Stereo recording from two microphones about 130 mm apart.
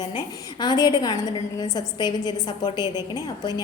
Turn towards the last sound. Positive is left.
turn(degrees=30)  # may be behind; listen again after turning